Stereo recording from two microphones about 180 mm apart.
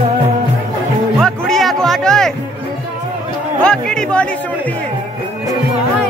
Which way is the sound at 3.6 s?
5° left (ahead or behind).